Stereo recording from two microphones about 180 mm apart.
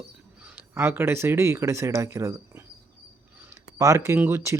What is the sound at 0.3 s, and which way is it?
A man's voice, 10° right (ahead or behind).